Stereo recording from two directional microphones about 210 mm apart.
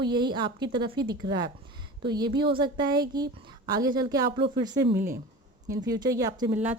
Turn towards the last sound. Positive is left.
turn(degrees=-10)  # may be behind; listen again after turning